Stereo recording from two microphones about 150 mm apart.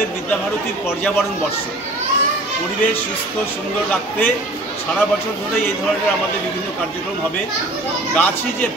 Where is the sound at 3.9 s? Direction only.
10° left (ahead or behind).